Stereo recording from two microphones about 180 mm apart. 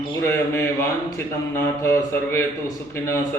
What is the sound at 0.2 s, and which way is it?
A man's voice, 15° left (ahead or behind).